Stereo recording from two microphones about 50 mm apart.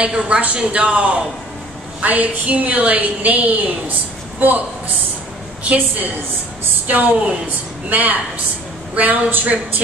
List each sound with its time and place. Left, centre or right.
0.0 s a man's voice: centre; by 9.6 s right